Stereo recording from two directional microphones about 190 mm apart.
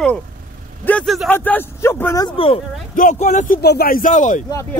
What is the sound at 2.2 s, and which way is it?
Speech, 30° left (ahead or behind).